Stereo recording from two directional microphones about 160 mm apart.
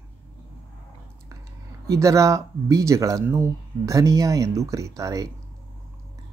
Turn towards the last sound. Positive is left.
turn(degrees=-20)  # may be behind; listen again after turning